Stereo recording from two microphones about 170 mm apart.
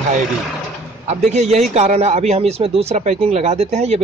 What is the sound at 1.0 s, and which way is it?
Speech, 40° right (ahead or behind).